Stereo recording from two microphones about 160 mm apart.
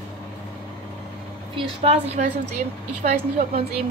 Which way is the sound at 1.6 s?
40° right (ahead or behind).